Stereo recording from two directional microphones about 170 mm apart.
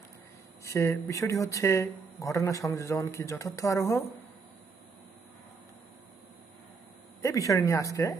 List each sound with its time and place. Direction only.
0.7 s speech: 15° left (ahead or behind)
7.2 s speech: 20° left (ahead or behind)